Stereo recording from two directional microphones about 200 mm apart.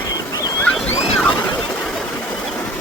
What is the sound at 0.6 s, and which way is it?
Boat, 10° left (ahead or behind).